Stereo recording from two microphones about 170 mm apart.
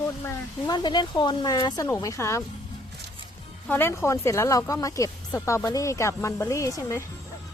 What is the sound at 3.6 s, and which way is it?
Speech, 10° left (ahead or behind).